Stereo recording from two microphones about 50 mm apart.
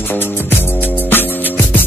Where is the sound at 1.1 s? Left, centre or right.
Left.